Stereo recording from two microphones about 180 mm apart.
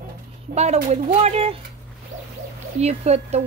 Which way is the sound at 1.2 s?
35° right (ahead or behind).